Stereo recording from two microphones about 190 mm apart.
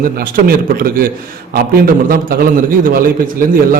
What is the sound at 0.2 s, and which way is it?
A man's voice, 50° right (ahead or behind).